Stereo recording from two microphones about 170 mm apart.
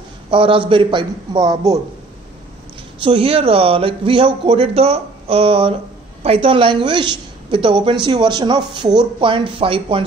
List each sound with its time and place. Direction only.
0.3 s a woman's voice: 30° right (ahead or behind)
3.0 s a woman's voice: 30° right (ahead or behind)